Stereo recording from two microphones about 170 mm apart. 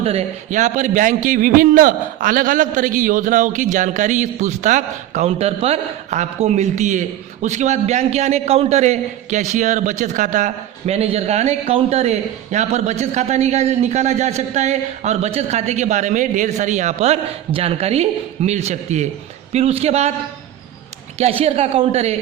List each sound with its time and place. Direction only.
0.0 s a man's voice: 35° right (ahead or behind)
21.2 s a man's voice: 35° right (ahead or behind)